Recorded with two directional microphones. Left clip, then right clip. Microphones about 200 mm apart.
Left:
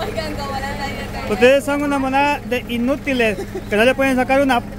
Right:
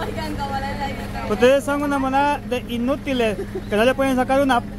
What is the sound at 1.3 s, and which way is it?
Speech, 10° left (ahead or behind).